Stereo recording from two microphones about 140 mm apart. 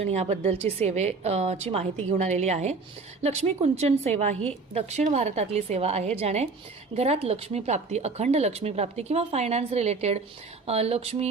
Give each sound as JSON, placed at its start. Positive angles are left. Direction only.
{"t": 0.0, "sound": "speech", "side_deg": -50}